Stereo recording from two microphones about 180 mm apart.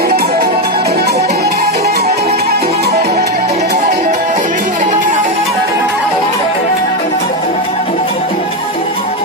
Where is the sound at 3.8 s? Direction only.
45° right (ahead or behind).